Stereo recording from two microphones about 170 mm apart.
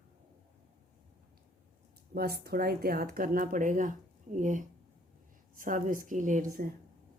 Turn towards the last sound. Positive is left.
turn(degrees=-55)  # may be behind; listen again after turning